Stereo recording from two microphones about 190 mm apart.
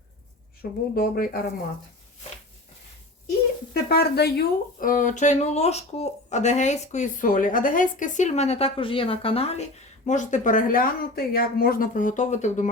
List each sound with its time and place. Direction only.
0.6 s speech: 55° left (ahead or behind)
3.8 s speech: 55° left (ahead or behind); by 12.7 s 40° left (ahead or behind)